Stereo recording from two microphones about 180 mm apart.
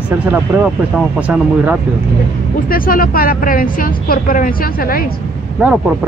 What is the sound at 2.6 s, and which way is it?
Speech, 55° left (ahead or behind).